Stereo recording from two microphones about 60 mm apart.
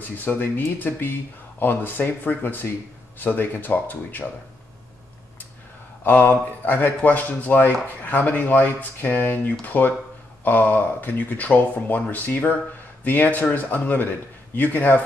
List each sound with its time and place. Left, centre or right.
0.0 s speech: left
6.0 s speech: left